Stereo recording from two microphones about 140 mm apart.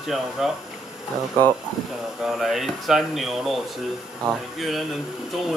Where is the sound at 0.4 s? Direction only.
Centre (ahead or behind).